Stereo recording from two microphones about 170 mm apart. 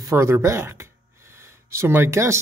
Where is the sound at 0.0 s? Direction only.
15° right (ahead or behind).